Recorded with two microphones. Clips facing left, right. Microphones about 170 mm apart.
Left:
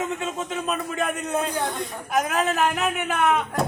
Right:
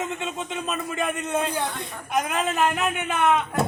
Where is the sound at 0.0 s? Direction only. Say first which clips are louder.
Left 2 dB; centre (ahead or behind).